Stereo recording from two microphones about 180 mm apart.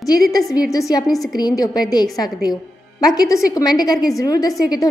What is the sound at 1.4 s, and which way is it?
A woman's voice, 20° left (ahead or behind).